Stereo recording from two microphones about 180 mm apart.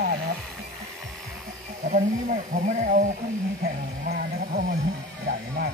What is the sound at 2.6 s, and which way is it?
Speech, 45° right (ahead or behind).